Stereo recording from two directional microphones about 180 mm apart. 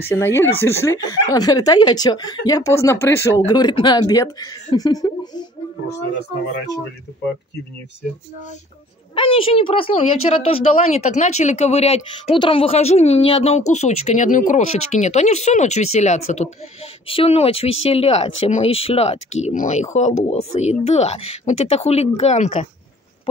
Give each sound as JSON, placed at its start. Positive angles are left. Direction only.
{"t": 0.0, "sound": "speech", "side_deg": 15}
{"t": 9.1, "sound": "a woman's voice", "side_deg": 30}